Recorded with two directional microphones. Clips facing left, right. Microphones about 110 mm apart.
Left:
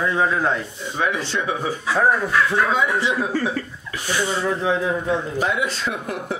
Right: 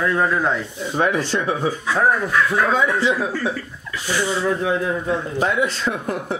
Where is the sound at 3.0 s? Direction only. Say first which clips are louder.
Right 2 dB; 20° left (ahead or behind).